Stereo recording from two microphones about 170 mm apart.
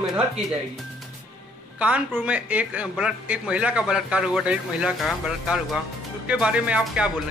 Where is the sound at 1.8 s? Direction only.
10° right (ahead or behind).